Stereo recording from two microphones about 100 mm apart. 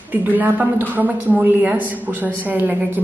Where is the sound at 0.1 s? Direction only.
20° right (ahead or behind).